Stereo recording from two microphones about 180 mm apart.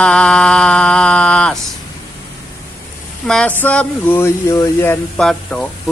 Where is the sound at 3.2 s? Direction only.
5° left (ahead or behind).